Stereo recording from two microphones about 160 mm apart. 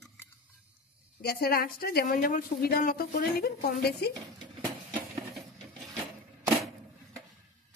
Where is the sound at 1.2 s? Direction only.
75° left (ahead or behind).